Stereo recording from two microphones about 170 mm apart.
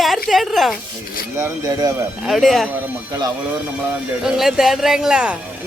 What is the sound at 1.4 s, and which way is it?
Speech, 15° right (ahead or behind).